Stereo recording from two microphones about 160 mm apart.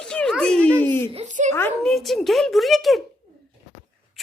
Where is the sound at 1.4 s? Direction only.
50° right (ahead or behind).